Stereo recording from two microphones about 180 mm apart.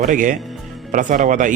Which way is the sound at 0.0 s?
50° right (ahead or behind).